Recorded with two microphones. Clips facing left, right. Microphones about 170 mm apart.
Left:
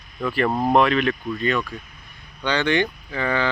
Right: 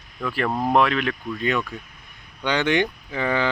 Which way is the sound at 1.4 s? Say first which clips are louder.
Left 1 dB; 15° right (ahead or behind).